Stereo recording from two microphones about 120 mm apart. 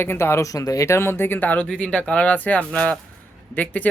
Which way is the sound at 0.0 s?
20° left (ahead or behind).